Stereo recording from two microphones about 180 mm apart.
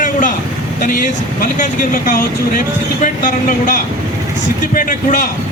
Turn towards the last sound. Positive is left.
turn(degrees=50)  # may be behind; listen again after turning